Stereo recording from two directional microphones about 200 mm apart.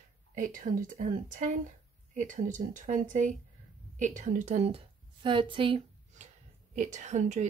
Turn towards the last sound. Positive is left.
turn(degrees=-35)  # may be behind; listen again after turning